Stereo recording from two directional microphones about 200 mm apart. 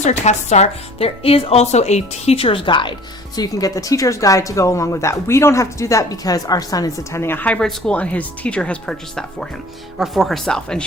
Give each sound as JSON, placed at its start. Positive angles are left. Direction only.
{"t": 0.0, "sound": "a woman's voice", "side_deg": 35}